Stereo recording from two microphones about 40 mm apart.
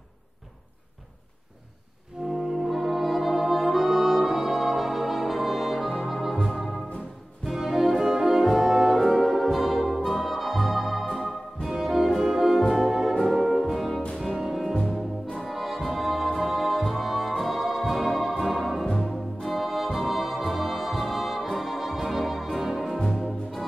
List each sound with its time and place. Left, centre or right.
2.2 s music: right
2.6 s music: centre
7.5 s brass instrument: centre
11.7 s music: centre
13.2 s brass instrument: centre
14.1 s music: centre
19.4 s organ: centre
20.0 s brass instrument: centre
22.9 s music: centre